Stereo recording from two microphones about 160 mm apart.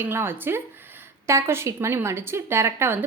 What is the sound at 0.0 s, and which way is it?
A woman's voice, 15° right (ahead or behind).